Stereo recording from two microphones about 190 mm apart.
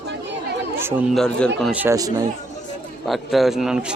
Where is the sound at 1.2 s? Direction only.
5° left (ahead or behind).